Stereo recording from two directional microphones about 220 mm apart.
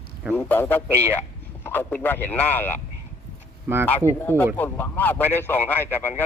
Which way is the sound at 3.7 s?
10° right (ahead or behind).